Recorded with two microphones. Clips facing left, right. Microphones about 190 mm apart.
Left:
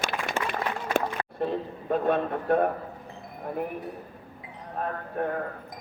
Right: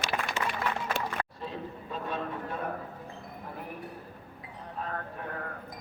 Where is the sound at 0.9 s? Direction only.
60° left (ahead or behind).